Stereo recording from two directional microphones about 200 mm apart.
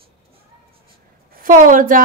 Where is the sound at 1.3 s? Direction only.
45° right (ahead or behind).